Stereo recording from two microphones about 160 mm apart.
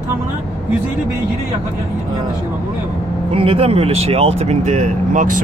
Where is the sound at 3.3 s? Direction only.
35° right (ahead or behind).